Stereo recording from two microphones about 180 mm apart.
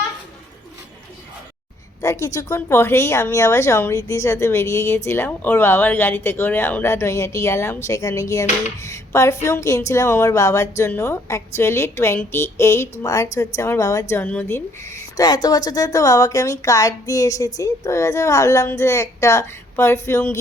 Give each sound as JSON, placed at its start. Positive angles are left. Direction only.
{"t": 2.0, "sound": "a woman's voice", "side_deg": 20}